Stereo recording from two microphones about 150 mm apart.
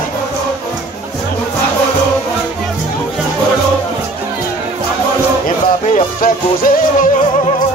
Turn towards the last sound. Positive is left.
turn(degrees=70)  # may be behind; listen again after turning